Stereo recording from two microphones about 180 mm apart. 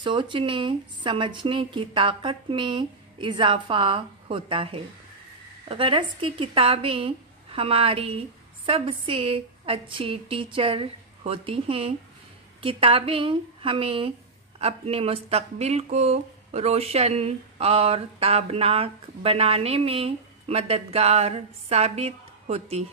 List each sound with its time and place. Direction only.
0.0 s speech: 25° right (ahead or behind)